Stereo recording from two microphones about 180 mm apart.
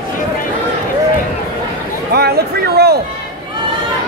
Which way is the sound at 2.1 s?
60° right (ahead or behind).